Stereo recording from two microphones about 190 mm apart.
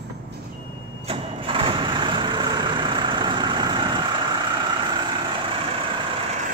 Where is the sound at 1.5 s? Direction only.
25° right (ahead or behind).